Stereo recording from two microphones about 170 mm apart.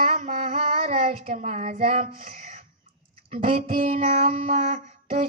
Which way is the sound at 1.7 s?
55° right (ahead or behind).